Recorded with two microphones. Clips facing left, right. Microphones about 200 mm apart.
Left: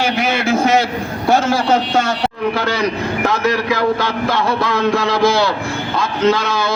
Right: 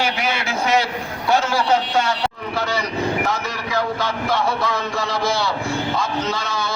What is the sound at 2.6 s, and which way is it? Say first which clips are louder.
A man's voice: even; 90° left.